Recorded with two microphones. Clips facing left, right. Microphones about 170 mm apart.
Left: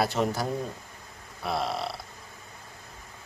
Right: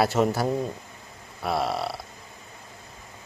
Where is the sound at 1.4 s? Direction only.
55° right (ahead or behind).